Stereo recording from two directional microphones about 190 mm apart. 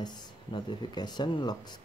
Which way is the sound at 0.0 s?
20° left (ahead or behind).